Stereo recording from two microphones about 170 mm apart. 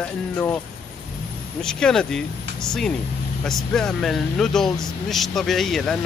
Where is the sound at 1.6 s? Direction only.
5° left (ahead or behind).